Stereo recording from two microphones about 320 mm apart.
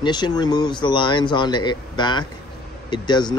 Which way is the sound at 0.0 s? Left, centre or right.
Centre.